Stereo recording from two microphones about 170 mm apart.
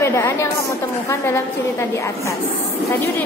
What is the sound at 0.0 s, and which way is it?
A woman's voice, 15° left (ahead or behind).